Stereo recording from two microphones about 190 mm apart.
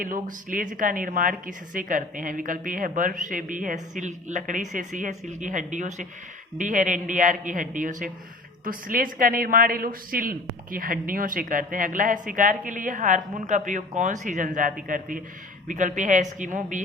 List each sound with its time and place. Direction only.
0.0 s a woman's voice: 45° right (ahead or behind)